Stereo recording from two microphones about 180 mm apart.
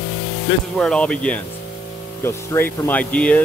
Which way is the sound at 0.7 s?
Centre (ahead or behind).